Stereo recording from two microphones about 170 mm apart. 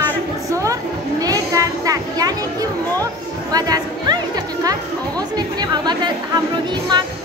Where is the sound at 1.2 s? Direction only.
20° right (ahead or behind).